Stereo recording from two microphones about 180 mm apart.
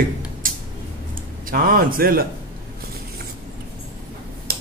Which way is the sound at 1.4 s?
50° right (ahead or behind).